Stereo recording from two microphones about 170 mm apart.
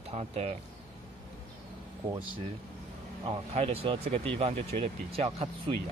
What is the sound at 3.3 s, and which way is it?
Speech, 35° right (ahead or behind).